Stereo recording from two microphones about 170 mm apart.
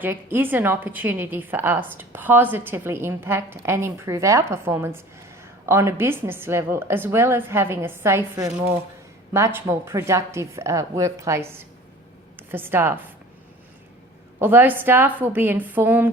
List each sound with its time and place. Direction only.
0.0 s a woman's voice: 10° right (ahead or behind)
14.3 s a woman's voice: 10° right (ahead or behind)